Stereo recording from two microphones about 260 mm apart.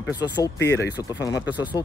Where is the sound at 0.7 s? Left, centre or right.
Left.